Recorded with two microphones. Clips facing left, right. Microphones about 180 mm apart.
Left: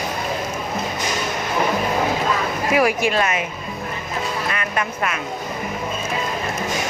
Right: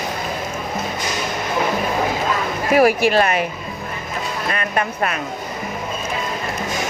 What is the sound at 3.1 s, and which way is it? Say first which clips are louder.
Speech: right 4 dB; 35° right (ahead or behind).